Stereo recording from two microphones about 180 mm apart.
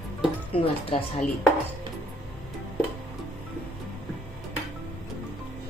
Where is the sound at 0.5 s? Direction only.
30° left (ahead or behind).